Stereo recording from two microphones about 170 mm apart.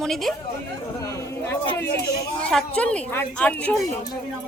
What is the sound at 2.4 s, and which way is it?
A woman's voice, 5° left (ahead or behind).